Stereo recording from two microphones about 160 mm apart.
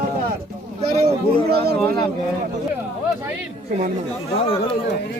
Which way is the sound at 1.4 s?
80° right.